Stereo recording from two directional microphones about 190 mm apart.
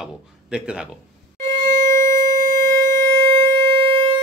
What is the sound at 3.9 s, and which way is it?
Siren, 30° right (ahead or behind).